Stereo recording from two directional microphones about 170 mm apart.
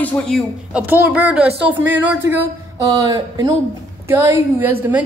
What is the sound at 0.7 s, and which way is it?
Speech, 10° right (ahead or behind).